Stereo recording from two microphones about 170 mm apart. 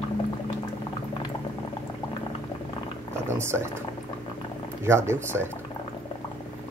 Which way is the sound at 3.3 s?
15° right (ahead or behind).